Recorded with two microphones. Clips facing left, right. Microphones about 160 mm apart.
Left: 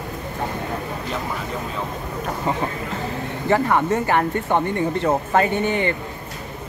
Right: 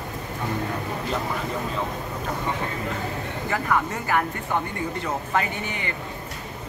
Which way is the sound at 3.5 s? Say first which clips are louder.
Left 7 dB; 35° left (ahead or behind).